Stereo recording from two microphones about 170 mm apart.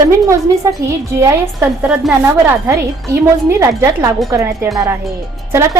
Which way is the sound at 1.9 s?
5° right (ahead or behind).